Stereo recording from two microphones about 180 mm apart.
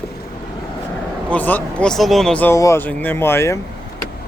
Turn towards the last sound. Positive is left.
turn(degrees=15)  # may be behind; listen again after turning